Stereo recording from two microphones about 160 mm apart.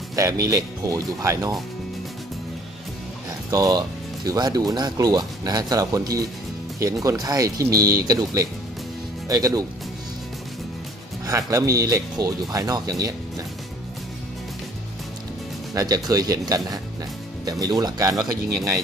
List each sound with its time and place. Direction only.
0.1 s speech: 20° right (ahead or behind)
3.4 s speech: 20° right (ahead or behind)
11.2 s speech: 20° right (ahead or behind)
15.7 s speech: 20° right (ahead or behind)